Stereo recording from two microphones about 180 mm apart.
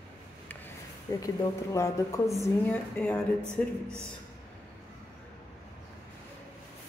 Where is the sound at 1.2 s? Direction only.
20° left (ahead or behind).